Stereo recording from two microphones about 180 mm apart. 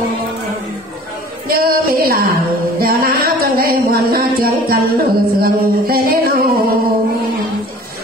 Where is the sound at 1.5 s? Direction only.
55° right (ahead or behind).